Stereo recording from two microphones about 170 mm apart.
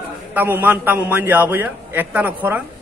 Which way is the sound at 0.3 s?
10° right (ahead or behind).